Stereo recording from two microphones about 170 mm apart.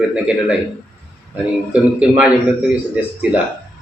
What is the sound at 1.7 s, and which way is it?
Speech, 5° right (ahead or behind).